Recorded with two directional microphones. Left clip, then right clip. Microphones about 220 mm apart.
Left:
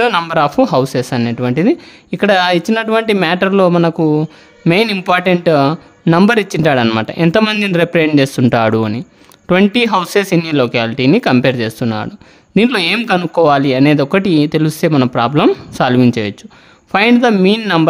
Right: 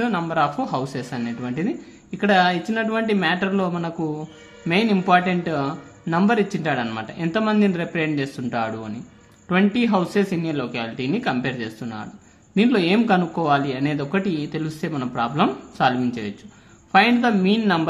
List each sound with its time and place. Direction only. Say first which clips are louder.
0.0 s speech: left 9 dB; 50° left (ahead or behind)